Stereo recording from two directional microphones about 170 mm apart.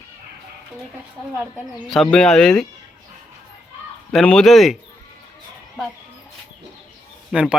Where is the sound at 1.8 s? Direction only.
Centre (ahead or behind).